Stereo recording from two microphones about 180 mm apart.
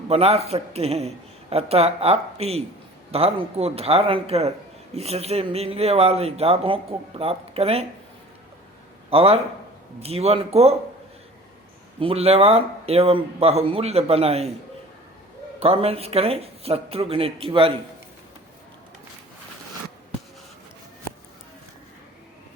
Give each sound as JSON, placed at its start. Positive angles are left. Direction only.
{"t": 0.1, "sound": "speech", "side_deg": -35}
{"t": 9.0, "sound": "a man's voice", "side_deg": -35}
{"t": 11.9, "sound": "speech", "side_deg": -30}
{"t": 15.6, "sound": "speech", "side_deg": -35}